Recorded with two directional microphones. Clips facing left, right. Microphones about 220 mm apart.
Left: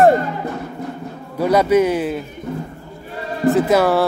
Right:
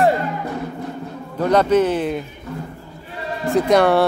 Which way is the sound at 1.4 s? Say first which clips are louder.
Left 1 dB; 10° left (ahead or behind).